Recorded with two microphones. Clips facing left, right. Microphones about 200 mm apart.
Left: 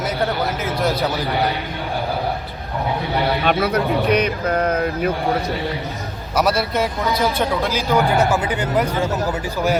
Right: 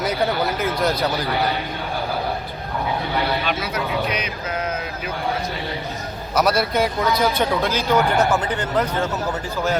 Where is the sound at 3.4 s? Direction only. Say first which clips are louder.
Left 7 dB; 60° left (ahead or behind).